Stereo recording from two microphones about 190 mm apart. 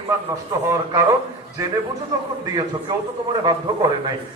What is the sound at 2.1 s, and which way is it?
Speech, 15° right (ahead or behind).